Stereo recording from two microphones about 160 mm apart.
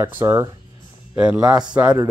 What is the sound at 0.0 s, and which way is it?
Speech, 15° right (ahead or behind).